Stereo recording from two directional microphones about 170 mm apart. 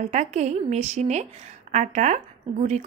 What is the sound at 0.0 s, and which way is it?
A woman's voice, 45° right (ahead or behind).